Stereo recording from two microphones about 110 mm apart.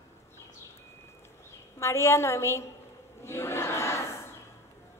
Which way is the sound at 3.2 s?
25° left (ahead or behind).